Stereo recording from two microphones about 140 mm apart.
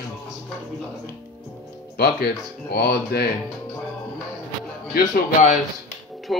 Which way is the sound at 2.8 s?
90° left.